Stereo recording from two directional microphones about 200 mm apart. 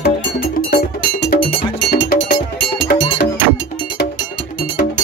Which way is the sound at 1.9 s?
45° left (ahead or behind).